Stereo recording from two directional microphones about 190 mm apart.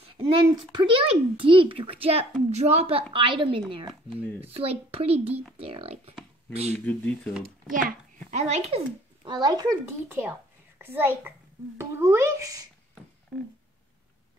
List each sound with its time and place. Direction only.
0.0 s a child's voice: 30° right (ahead or behind)
6.7 s speech: 10° left (ahead or behind)
8.3 s a child's voice: 35° right (ahead or behind); by 12.6 s 15° right (ahead or behind)